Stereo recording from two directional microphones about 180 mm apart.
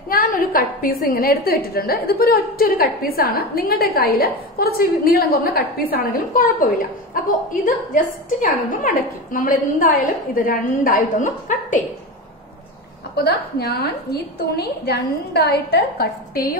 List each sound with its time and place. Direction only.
0.1 s a woman's voice: 55° left (ahead or behind)
13.1 s a woman's voice: 60° left (ahead or behind)